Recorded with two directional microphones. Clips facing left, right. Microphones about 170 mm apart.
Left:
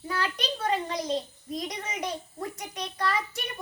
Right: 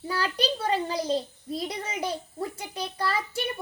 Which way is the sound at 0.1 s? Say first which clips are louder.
Right 3 dB; 35° right (ahead or behind).